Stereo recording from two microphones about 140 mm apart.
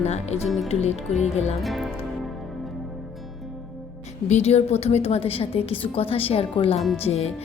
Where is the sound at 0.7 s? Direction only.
50° left (ahead or behind).